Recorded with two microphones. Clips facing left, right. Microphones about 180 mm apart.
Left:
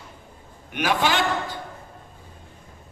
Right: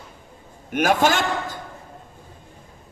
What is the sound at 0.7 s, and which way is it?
Speech, 45° right (ahead or behind).